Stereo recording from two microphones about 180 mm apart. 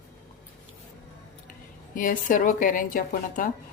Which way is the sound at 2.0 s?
45° left (ahead or behind).